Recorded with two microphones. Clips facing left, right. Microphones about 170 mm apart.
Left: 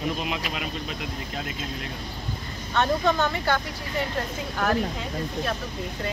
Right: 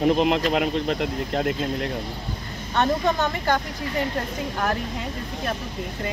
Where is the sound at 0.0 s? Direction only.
65° right (ahead or behind).